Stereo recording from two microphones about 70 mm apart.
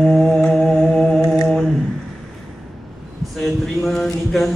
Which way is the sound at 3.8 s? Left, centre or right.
Centre.